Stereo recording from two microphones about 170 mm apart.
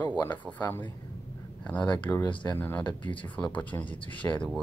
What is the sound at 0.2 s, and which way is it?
Speech, 10° left (ahead or behind).